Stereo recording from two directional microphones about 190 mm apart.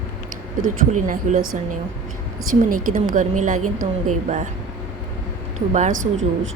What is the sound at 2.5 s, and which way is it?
A woman's voice, 45° right (ahead or behind).